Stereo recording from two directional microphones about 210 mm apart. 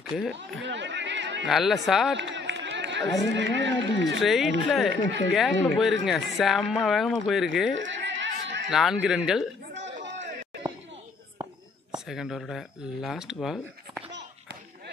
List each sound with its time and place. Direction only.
0.1 s speech: centre (ahead or behind)
0.7 s speech: 60° right (ahead or behind)
1.5 s speech: centre (ahead or behind)
2.1 s speech: 60° right (ahead or behind)
4.2 s speech: centre (ahead or behind)
7.9 s a sound: 60° right (ahead or behind)
8.6 s speech: centre (ahead or behind)
10.0 s run: 60° right (ahead or behind)
12.1 s speech: centre (ahead or behind)